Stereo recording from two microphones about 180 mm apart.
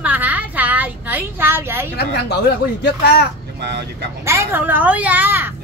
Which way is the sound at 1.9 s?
65° left (ahead or behind).